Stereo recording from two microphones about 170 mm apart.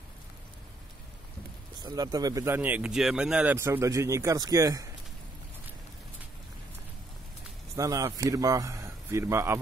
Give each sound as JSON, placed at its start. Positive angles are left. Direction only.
{"t": 1.8, "sound": "speech", "side_deg": -25}
{"t": 7.7, "sound": "a man's voice", "side_deg": -20}